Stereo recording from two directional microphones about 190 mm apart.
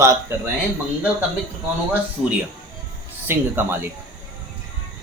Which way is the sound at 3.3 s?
10° right (ahead or behind).